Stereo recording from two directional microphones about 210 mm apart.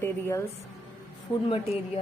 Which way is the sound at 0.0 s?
10° left (ahead or behind).